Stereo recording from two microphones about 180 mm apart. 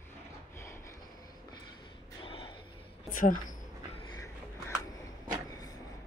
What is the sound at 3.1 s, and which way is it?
Speech, 50° left (ahead or behind).